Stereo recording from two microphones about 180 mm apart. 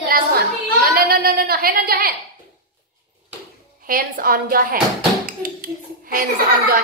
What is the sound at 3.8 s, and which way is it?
A woman's voice, 50° right (ahead or behind).